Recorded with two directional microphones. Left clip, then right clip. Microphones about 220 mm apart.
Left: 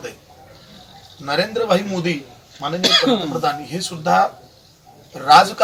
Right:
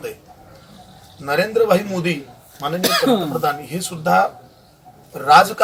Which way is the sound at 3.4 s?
5° right (ahead or behind).